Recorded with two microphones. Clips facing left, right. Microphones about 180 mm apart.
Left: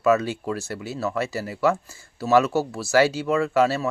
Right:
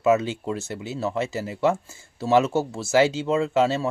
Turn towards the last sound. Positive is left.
turn(degrees=-20)  # may be behind; listen again after turning